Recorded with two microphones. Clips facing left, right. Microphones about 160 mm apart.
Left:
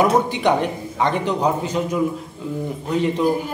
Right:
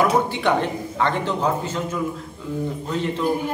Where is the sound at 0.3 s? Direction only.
15° left (ahead or behind).